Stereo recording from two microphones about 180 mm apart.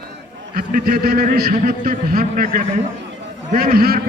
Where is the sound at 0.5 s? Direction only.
55° right (ahead or behind).